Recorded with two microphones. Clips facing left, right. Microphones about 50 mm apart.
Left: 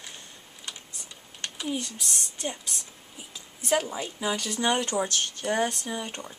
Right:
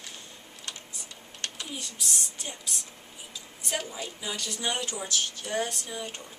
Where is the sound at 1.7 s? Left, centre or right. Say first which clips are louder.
Left 7 dB; left.